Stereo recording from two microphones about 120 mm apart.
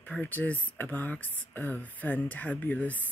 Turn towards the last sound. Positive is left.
turn(degrees=15)  # may be behind; listen again after turning